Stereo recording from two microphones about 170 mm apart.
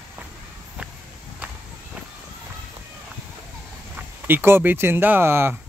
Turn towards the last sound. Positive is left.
turn(degrees=-15)  # may be behind; listen again after turning